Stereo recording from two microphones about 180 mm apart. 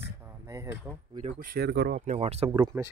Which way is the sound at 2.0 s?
35° right (ahead or behind).